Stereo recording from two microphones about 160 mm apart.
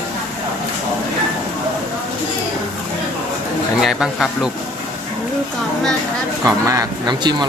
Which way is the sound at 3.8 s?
Centre (ahead or behind).